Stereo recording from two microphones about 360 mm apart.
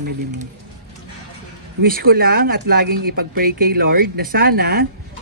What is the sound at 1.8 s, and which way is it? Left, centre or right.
Speech, right.